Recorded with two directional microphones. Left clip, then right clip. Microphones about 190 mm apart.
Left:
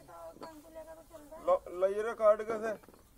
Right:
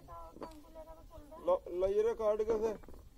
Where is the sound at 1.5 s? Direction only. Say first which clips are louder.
Left 3 dB; 20° right (ahead or behind).